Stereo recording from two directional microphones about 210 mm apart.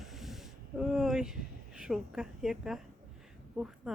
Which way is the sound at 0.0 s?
Centre (ahead or behind).